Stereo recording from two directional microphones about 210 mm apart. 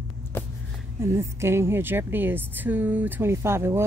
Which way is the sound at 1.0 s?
15° right (ahead or behind).